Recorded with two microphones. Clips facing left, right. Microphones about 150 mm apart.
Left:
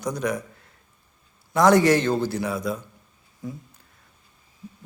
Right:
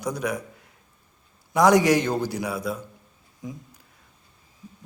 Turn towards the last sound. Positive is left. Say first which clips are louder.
# left 2 dB
turn(degrees=-15)  # may be behind; listen again after turning